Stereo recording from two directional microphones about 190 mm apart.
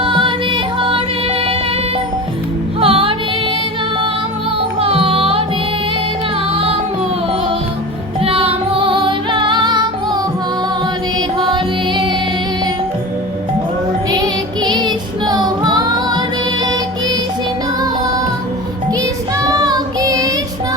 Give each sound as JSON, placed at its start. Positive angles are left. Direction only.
{"t": 0.0, "sound": "music", "side_deg": -25}
{"t": 2.8, "sound": "music", "side_deg": -30}
{"t": 4.8, "sound": "music", "side_deg": -30}
{"t": 6.5, "sound": "music", "side_deg": -30}
{"t": 8.2, "sound": "music", "side_deg": -30}
{"t": 11.3, "sound": "music", "side_deg": -25}
{"t": 14.1, "sound": "music", "side_deg": -20}
{"t": 18.9, "sound": "child singing", "side_deg": -20}